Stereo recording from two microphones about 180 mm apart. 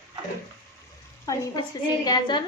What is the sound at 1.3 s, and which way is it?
A woman's voice, 20° left (ahead or behind).